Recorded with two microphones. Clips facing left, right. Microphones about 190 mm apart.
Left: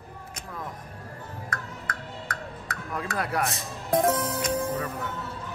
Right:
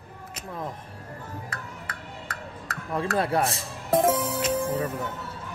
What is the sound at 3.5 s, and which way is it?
Music, 5° right (ahead or behind).